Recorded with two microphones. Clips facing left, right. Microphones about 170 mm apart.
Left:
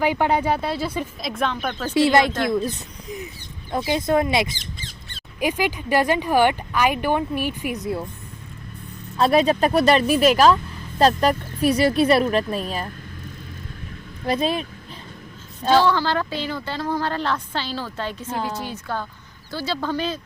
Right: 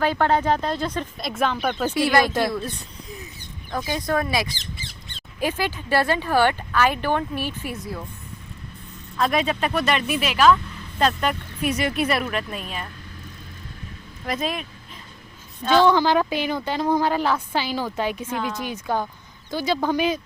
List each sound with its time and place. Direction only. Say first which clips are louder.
0.0 s speech: even; 15° left (ahead or behind)
1.3 s speech: right 2 dB; 5° right (ahead or behind)
1.9 s speech: left 4 dB; 25° left (ahead or behind)
3.7 s speech: left 4 dB; 25° left (ahead or behind)
5.4 s speech: left 2 dB; 15° left (ahead or behind)
9.1 s speech: left 5 dB; 35° left (ahead or behind)
14.3 s speech: left 5 dB; 30° left (ahead or behind)
15.7 s speech: right 1 dB; 20° right (ahead or behind)
18.3 s speech: even; 30° left (ahead or behind)
18.6 s speech: right 3 dB; 15° right (ahead or behind)